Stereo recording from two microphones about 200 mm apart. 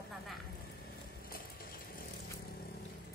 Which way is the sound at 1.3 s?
45° left (ahead or behind).